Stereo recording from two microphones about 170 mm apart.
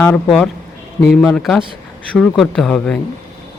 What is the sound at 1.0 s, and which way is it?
Speech, 5° left (ahead or behind).